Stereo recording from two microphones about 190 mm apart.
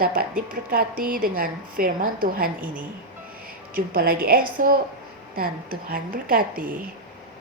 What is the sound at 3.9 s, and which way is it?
A woman's voice, 50° right (ahead or behind).